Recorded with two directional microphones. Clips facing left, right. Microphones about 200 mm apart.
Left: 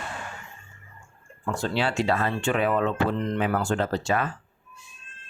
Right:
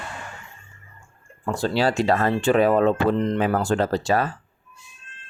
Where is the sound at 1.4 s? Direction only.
35° right (ahead or behind).